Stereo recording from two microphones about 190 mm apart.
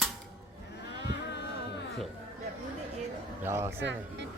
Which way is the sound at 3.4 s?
15° right (ahead or behind).